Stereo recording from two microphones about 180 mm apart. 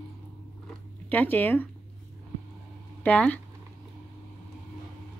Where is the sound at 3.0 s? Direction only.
10° left (ahead or behind).